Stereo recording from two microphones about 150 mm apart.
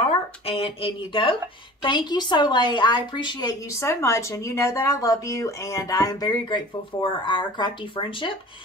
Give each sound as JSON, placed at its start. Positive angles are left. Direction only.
{"t": 0.0, "sound": "speech", "side_deg": 40}